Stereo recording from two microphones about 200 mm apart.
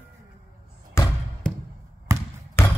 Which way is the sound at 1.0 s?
15° left (ahead or behind).